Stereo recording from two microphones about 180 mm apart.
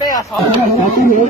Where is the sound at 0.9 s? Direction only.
50° left (ahead or behind).